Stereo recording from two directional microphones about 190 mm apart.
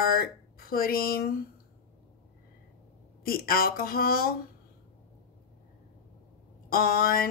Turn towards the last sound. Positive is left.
turn(degrees=50)  # may be behind; listen again after turning